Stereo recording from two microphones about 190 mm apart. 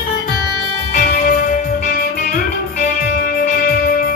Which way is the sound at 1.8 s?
50° left (ahead or behind).